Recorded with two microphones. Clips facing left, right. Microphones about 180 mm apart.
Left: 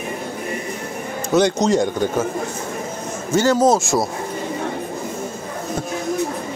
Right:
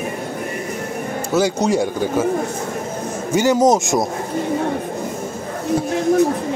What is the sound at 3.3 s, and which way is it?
Speech, 15° right (ahead or behind).